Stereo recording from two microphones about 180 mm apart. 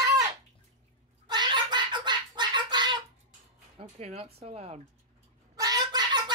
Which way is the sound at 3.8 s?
35° right (ahead or behind).